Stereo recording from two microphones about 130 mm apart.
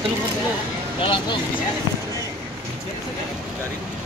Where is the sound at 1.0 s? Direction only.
40° left (ahead or behind).